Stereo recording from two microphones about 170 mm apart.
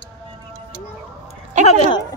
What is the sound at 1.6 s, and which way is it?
Speech, 45° right (ahead or behind).